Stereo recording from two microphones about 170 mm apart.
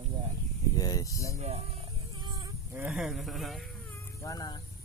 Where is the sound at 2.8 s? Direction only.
5° right (ahead or behind).